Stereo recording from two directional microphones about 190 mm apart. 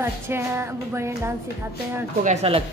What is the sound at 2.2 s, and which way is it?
Speech, 35° right (ahead or behind).